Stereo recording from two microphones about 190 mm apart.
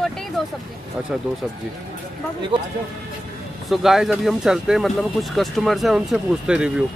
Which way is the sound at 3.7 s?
Centre (ahead or behind).